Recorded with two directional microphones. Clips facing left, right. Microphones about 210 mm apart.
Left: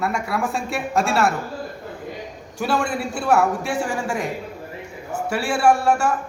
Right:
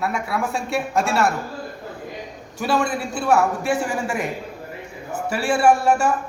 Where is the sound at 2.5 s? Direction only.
Centre (ahead or behind).